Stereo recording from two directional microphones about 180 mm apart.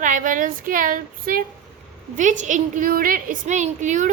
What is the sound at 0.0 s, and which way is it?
A woman's voice, 45° right (ahead or behind).